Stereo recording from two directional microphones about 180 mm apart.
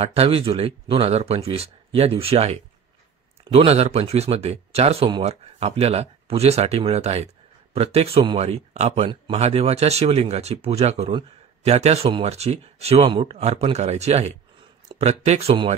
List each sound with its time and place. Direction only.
0.0 s speech: 35° right (ahead or behind)